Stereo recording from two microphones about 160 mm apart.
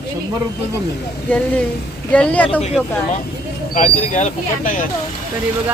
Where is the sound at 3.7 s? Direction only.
55° left (ahead or behind).